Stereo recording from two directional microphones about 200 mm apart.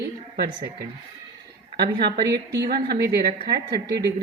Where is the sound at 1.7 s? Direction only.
55° right (ahead or behind).